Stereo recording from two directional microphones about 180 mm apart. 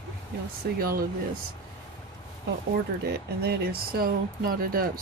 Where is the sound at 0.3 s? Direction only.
60° right (ahead or behind).